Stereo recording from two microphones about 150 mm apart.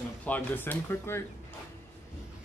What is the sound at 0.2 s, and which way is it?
Speech, 10° left (ahead or behind).